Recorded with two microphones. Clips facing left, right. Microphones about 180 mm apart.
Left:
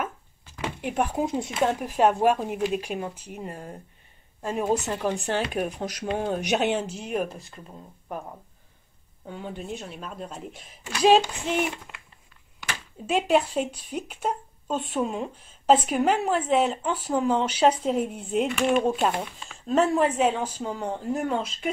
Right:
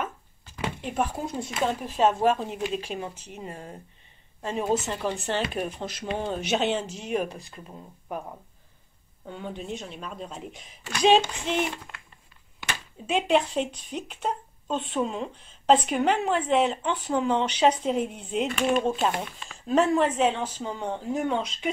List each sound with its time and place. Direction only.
0.7 s speech: 15° left (ahead or behind); by 8.2 s centre (ahead or behind)
9.2 s speech: 5° left (ahead or behind)
13.0 s speech: 5° left (ahead or behind)
19.4 s speech: centre (ahead or behind)